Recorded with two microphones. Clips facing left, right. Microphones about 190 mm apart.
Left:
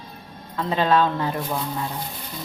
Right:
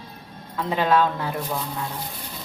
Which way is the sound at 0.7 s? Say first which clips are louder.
Left 1 dB; 10° right (ahead or behind).